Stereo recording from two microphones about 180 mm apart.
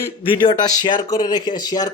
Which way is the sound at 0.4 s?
25° left (ahead or behind).